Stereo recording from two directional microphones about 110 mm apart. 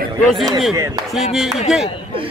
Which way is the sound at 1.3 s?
Centre (ahead or behind).